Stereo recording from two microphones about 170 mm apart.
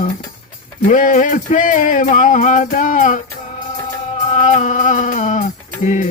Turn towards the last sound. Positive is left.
turn(degrees=45)  # may be behind; listen again after turning